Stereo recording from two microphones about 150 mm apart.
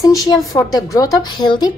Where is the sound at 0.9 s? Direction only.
25° left (ahead or behind).